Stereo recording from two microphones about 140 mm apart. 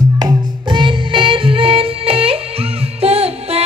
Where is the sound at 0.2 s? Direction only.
35° right (ahead or behind).